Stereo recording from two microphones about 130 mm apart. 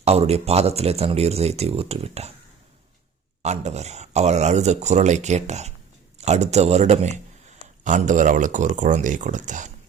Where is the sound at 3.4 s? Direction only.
60° right (ahead or behind).